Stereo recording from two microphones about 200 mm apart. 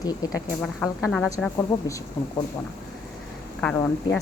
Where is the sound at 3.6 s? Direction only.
5° left (ahead or behind).